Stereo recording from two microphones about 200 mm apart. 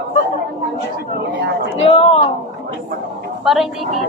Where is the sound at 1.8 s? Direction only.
30° left (ahead or behind).